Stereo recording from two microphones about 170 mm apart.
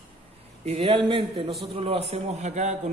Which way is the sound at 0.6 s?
35° right (ahead or behind).